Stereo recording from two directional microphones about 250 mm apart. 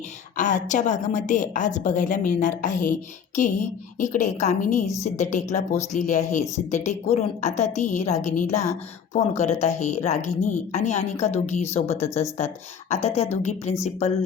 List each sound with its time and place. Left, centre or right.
0.3 s a woman's voice: left